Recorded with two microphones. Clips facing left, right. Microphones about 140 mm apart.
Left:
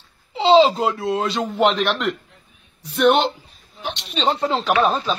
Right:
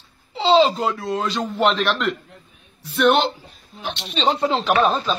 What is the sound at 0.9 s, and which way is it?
Speech, 25° left (ahead or behind).